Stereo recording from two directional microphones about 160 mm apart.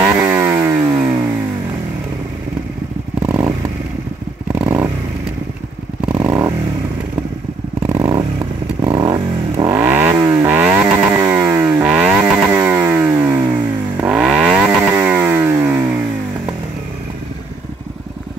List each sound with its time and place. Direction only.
0.0 s chainsaw: 15° right (ahead or behind)
3.3 s vehicle: 15° right (ahead or behind)
6.1 s motorcycle: 15° right (ahead or behind)
7.9 s vehicle: 25° right (ahead or behind)
11.1 s chainsaw: 15° right (ahead or behind)
12.5 s a sound: 15° right (ahead or behind)
14.0 s vehicle: 5° right (ahead or behind)
15.0 s music: 10° right (ahead or behind)